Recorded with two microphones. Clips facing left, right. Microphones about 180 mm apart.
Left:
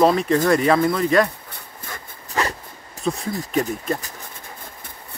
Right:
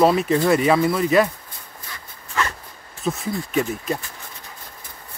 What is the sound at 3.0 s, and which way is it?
Speech, 5° right (ahead or behind).